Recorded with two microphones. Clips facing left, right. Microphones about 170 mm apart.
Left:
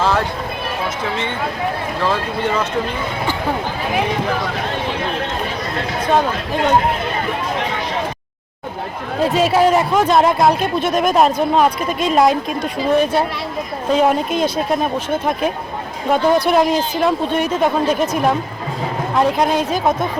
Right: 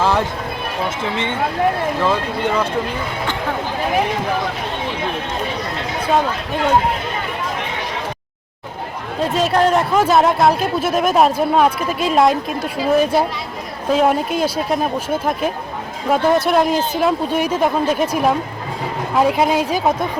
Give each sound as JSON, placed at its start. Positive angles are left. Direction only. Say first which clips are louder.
{"t": 9.2, "sound": "speech", "louder": "left 2 dB", "side_deg": 0}